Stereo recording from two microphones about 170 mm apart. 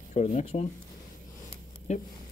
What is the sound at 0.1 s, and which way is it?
Speech, 40° left (ahead or behind).